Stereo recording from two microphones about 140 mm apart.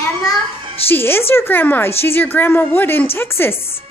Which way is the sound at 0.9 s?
15° left (ahead or behind).